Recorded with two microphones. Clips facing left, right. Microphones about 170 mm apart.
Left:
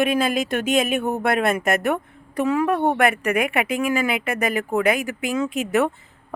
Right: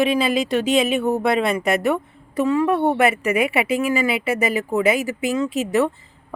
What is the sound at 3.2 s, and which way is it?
Speech, 50° left (ahead or behind).